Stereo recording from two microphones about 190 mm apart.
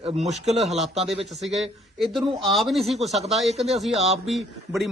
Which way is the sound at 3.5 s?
35° right (ahead or behind).